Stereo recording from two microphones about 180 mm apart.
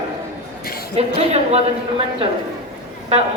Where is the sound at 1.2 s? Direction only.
35° right (ahead or behind).